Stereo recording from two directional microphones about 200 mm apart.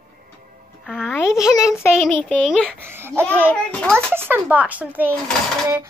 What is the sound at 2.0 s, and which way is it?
Speech, 5° left (ahead or behind).